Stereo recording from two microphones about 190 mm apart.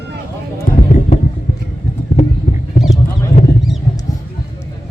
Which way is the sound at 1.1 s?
35° left (ahead or behind).